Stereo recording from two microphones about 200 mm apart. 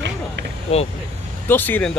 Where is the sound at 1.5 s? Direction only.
10° left (ahead or behind).